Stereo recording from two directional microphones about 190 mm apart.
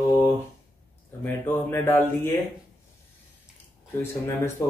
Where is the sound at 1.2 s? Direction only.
10° left (ahead or behind).